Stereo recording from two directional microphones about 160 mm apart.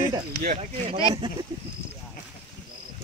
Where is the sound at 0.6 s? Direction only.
40° right (ahead or behind).